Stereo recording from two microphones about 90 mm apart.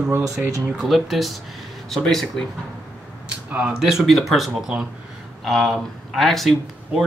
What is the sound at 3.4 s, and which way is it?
Speech, 15° right (ahead or behind).